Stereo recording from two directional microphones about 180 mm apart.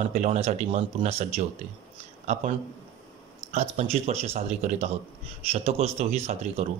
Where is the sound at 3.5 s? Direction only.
40° right (ahead or behind).